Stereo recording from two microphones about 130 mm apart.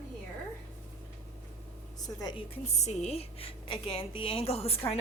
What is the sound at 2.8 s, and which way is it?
A woman's voice, 60° left (ahead or behind).